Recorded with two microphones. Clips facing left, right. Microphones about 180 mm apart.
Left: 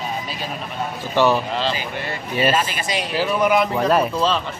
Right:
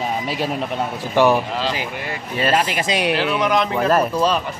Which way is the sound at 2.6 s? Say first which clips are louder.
Right 4 dB; 80° right.